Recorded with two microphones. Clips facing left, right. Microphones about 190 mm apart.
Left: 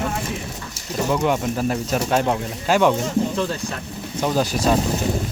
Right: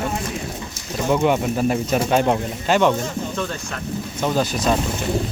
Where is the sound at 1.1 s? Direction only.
5° right (ahead or behind).